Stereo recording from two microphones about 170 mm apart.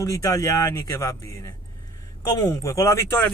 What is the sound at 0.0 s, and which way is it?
A man's voice, 20° left (ahead or behind).